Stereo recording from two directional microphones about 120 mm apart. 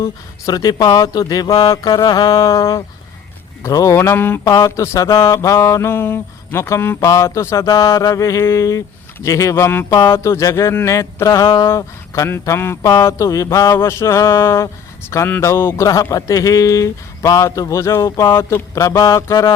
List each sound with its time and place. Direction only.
0.4 s speech: 30° left (ahead or behind)
3.6 s mantra: 30° left (ahead or behind)
11.4 s speech: 40° left (ahead or behind)
11.7 s mantra: 25° left (ahead or behind)